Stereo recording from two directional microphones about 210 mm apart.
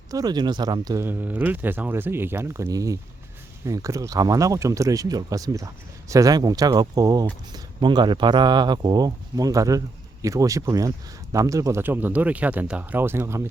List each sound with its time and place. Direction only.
0.1 s speech: 20° right (ahead or behind)